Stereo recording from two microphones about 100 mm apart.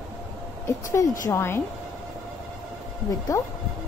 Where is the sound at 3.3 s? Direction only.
25° left (ahead or behind).